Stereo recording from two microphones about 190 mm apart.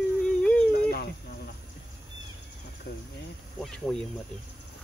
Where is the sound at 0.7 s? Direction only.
55° left (ahead or behind).